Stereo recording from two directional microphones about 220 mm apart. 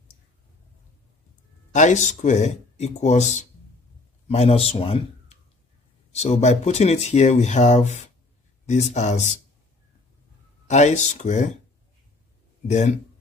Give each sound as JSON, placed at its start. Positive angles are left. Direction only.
{"t": 1.7, "sound": "speech", "side_deg": 35}
{"t": 10.7, "sound": "speech", "side_deg": 30}
{"t": 12.6, "sound": "speech", "side_deg": 30}